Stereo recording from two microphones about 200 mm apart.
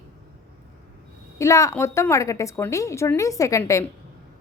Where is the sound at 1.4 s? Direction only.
15° left (ahead or behind).